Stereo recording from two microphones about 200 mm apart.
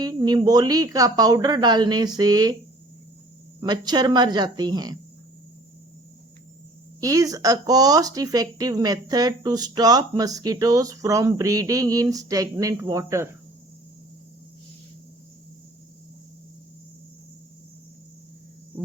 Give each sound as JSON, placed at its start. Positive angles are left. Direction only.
{"t": 0.0, "sound": "speech", "side_deg": -20}
{"t": 3.6, "sound": "speech", "side_deg": -20}
{"t": 7.0, "sound": "speech", "side_deg": -15}